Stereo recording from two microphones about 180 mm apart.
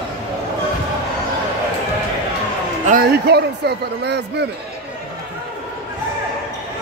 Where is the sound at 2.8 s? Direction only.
50° right (ahead or behind); by 4.5 s 70° right (ahead or behind).